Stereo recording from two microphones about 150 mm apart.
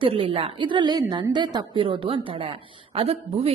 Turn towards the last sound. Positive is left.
turn(degrees=-40)  # may be behind; listen again after turning